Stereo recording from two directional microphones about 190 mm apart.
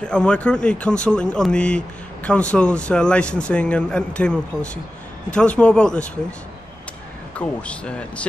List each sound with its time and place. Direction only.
0.0 s speech: 5° left (ahead or behind)
7.3 s speech: 5° left (ahead or behind)